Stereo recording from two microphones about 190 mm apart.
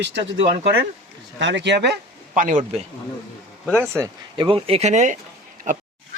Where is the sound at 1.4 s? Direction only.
70° right (ahead or behind).